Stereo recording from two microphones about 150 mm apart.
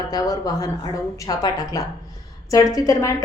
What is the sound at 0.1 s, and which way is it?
A woman's voice, 25° left (ahead or behind).